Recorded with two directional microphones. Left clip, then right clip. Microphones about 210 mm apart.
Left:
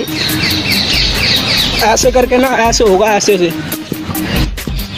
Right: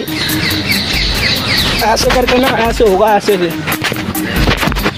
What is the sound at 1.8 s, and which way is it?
Speech, 25° left (ahead or behind).